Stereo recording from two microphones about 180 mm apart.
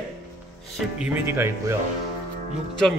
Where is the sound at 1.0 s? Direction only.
10° right (ahead or behind).